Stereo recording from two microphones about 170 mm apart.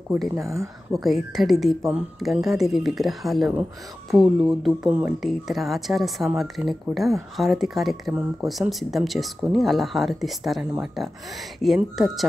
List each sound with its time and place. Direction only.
0.4 s speech: 20° right (ahead or behind)
0.9 s speech: centre (ahead or behind)
5.2 s speech: centre (ahead or behind)